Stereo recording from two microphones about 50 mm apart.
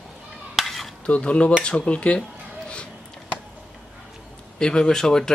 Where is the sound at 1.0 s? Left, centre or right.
Left.